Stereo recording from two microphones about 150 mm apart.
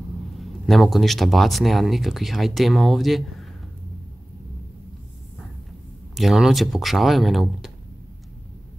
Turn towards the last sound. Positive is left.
turn(degrees=0)  # may be behind; listen again after turning